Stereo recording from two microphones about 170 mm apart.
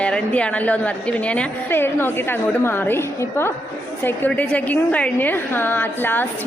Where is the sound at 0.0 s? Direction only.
5° left (ahead or behind).